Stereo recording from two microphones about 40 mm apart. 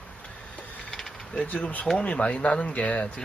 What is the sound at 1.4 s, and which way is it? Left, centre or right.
Speech, left.